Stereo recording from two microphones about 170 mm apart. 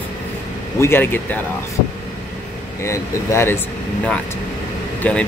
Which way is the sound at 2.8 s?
15° left (ahead or behind).